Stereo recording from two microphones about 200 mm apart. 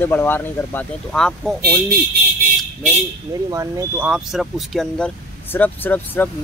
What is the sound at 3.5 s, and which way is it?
Speech, 15° right (ahead or behind).